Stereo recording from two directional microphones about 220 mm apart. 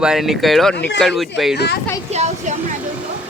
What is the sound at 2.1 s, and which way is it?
Speech, 30° right (ahead or behind).